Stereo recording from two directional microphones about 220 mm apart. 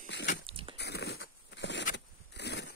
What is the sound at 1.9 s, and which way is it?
Zipper, 50° left (ahead or behind).